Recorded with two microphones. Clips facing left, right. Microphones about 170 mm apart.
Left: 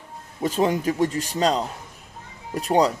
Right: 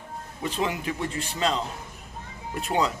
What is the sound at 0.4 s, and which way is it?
A man's voice, 40° left (ahead or behind).